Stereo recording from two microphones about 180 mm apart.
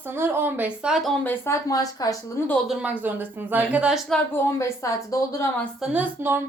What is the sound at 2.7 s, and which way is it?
A woman's voice, 10° right (ahead or behind).